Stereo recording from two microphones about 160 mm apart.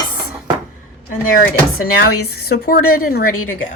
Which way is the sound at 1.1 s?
60° left (ahead or behind).